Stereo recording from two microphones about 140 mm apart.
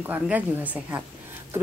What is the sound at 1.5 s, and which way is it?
Patter, 15° right (ahead or behind).